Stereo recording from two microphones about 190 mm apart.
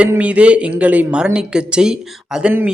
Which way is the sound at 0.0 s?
5° right (ahead or behind).